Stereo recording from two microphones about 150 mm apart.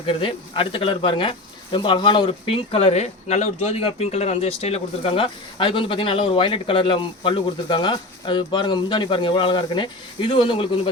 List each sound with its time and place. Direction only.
0.0 s speech: 35° left (ahead or behind)